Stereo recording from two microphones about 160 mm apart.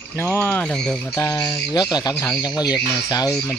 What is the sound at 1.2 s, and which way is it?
Speech, 25° left (ahead or behind).